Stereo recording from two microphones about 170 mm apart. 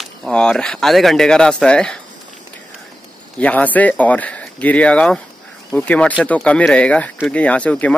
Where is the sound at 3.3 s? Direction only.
10° left (ahead or behind).